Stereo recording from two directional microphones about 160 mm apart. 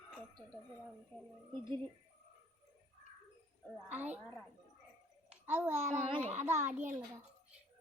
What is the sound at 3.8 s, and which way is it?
Speech, 10° right (ahead or behind).